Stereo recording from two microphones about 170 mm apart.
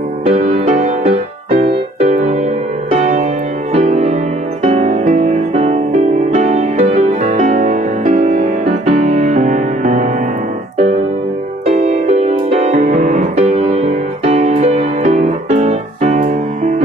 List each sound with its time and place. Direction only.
0.3 s music: 45° right (ahead or behind)
11.6 s music: 40° right (ahead or behind)